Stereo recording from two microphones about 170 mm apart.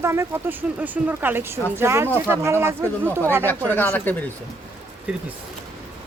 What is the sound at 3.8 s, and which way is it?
Speech, 10° left (ahead or behind).